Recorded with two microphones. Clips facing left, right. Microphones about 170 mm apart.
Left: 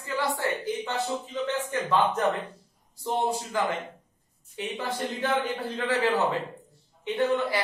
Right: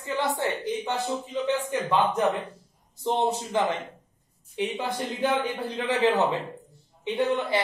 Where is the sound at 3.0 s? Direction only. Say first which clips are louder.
Right 2 dB; 20° right (ahead or behind).